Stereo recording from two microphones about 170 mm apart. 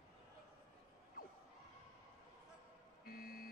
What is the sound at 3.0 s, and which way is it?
Vehicle, 60° left (ahead or behind).